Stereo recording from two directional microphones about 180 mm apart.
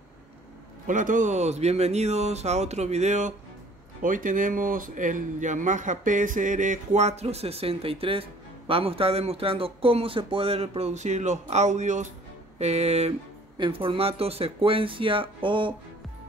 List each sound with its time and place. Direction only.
0.8 s speech: 45° right (ahead or behind); by 15.7 s 25° right (ahead or behind)